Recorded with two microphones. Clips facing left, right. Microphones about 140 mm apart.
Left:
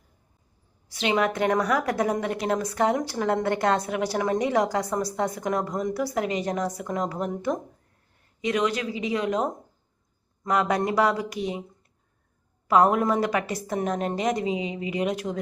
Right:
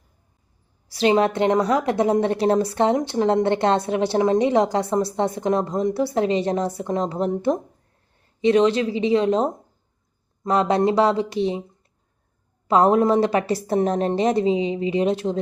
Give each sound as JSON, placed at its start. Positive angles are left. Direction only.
{"t": 0.9, "sound": "a woman's voice", "side_deg": -35}
{"t": 12.6, "sound": "a woman's voice", "side_deg": -30}